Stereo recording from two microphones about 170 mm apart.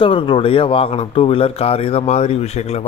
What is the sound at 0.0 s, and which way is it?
A man's voice, 30° left (ahead or behind).